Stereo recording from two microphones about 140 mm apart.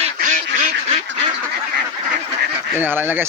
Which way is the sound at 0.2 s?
65° right (ahead or behind).